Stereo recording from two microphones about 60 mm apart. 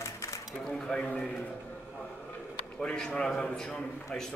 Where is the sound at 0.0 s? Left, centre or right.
Left.